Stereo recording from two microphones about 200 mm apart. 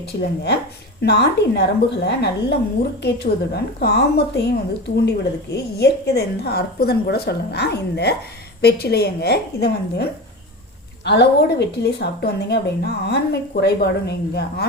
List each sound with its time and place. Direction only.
1.0 s a woman's voice: 55° left (ahead or behind)